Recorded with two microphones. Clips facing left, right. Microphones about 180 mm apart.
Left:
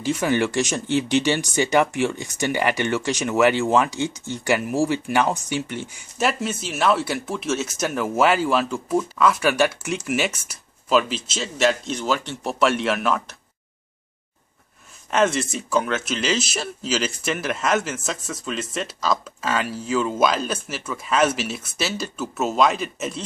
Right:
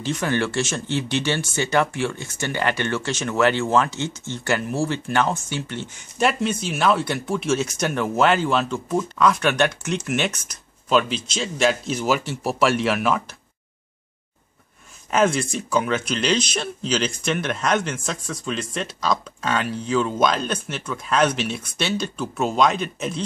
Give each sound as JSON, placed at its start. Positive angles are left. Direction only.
{"t": 0.0, "sound": "speech", "side_deg": 10}
{"t": 6.1, "sound": "speech", "side_deg": 5}
{"t": 15.0, "sound": "speech", "side_deg": 0}